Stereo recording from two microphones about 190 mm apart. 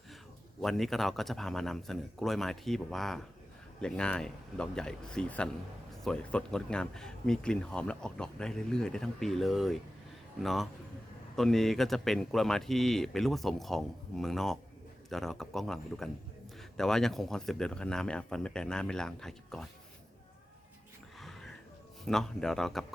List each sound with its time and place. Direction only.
0.6 s speech: centre (ahead or behind)
21.2 s music: centre (ahead or behind)
22.0 s speech: centre (ahead or behind)